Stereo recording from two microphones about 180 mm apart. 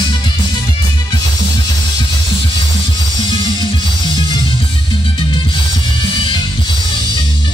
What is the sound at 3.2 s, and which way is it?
Music, 25° left (ahead or behind).